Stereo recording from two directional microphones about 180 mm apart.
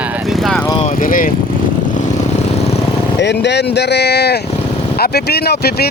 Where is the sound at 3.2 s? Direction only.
75° left (ahead or behind).